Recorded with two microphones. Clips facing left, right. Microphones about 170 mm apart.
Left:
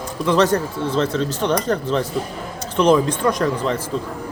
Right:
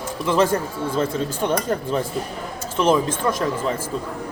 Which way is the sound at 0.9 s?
10° right (ahead or behind).